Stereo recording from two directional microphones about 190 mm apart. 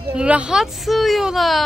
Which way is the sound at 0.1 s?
5° right (ahead or behind).